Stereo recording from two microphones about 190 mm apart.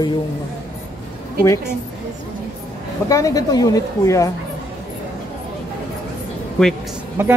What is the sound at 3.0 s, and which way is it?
A woman's voice, 15° left (ahead or behind).